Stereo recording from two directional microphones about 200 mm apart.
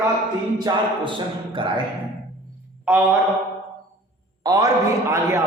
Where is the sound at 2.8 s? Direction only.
10° right (ahead or behind).